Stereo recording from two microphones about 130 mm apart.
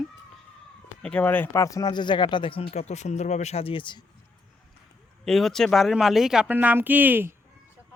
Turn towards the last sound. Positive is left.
turn(degrees=-15)  # may be behind; listen again after turning